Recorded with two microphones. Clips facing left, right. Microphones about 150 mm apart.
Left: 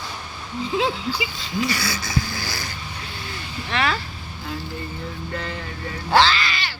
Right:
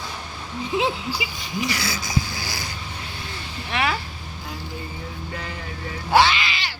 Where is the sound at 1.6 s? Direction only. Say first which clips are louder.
Left 1 dB; 20° right (ahead or behind).